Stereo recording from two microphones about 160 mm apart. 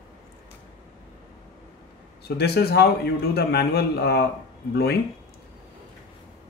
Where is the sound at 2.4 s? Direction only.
85° left.